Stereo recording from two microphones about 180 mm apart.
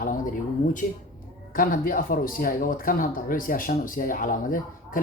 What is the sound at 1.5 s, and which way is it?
Speech, 50° left (ahead or behind).